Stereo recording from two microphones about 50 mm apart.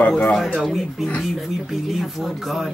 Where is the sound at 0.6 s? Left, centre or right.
Centre.